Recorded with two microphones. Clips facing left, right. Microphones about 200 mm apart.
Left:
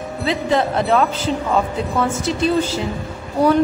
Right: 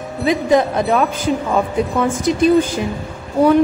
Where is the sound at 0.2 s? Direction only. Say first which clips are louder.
Right 4 dB; 15° right (ahead or behind).